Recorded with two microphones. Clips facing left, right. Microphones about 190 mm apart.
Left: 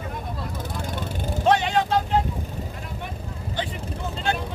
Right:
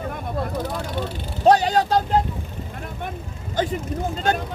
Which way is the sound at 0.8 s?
50° left (ahead or behind).